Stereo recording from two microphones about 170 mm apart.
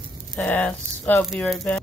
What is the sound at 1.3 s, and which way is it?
Speech, centre (ahead or behind).